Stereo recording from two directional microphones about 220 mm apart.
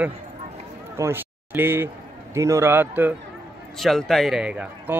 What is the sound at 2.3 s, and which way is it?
Speech, 10° right (ahead or behind).